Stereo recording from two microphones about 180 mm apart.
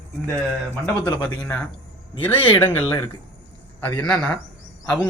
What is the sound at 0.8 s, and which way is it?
Speech, 20° left (ahead or behind).